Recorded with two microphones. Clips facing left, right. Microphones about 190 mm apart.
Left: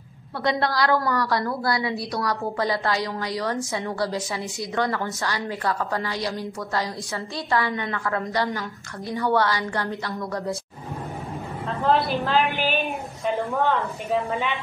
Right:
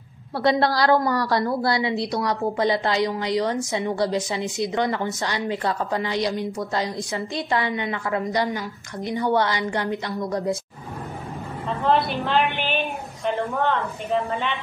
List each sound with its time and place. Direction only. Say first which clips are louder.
0.4 s a woman's voice: right 3 dB; 30° right (ahead or behind)
11.8 s a woman's voice: even; centre (ahead or behind)